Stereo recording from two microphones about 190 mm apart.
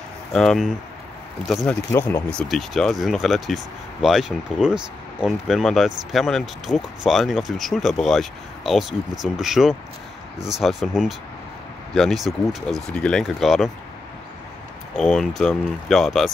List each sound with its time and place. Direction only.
0.3 s speech: centre (ahead or behind)
1.9 s speech: 10° left (ahead or behind)
15.0 s speech: 5° left (ahead or behind)